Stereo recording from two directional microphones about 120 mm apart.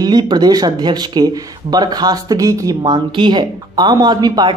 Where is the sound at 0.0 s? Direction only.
35° right (ahead or behind).